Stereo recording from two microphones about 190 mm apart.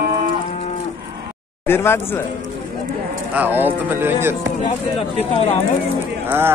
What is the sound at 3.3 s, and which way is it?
Speech, 10° right (ahead or behind).